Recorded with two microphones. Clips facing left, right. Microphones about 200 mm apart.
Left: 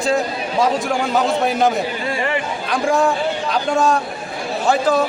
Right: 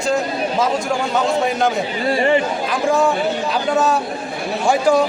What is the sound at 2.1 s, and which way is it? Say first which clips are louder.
Speech: right 8 dB; 30° right (ahead or behind).